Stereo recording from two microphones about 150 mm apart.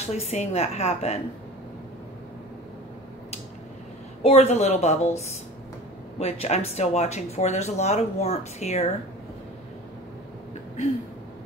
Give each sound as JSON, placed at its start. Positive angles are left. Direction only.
{"t": 0.0, "sound": "speech", "side_deg": 45}
{"t": 4.2, "sound": "speech", "side_deg": 45}